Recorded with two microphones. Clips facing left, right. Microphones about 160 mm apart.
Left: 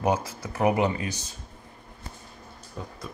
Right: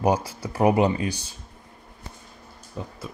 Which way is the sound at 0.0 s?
35° right (ahead or behind).